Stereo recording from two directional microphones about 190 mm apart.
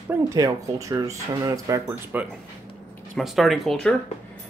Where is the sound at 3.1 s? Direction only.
Centre (ahead or behind).